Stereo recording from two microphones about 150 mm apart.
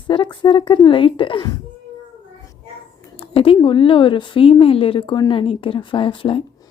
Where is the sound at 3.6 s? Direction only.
35° left (ahead or behind).